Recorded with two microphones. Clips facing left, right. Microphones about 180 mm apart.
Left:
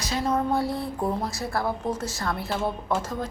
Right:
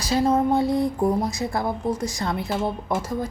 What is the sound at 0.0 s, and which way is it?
A woman's voice, 30° right (ahead or behind).